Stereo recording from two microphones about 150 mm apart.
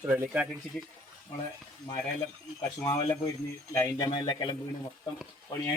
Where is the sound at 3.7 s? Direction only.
30° left (ahead or behind).